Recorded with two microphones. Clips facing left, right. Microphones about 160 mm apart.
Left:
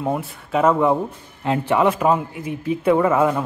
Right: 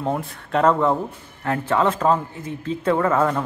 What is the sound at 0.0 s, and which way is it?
A man's voice, 5° left (ahead or behind).